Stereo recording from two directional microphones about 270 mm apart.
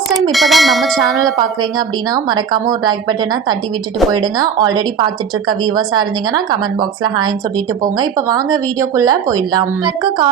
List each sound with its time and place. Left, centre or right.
0.2 s bell: centre
2.1 s speech: centre
4.4 s speech: centre
7.9 s speech: centre